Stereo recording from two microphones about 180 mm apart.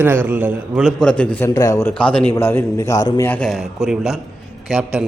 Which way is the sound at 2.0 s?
5° left (ahead or behind).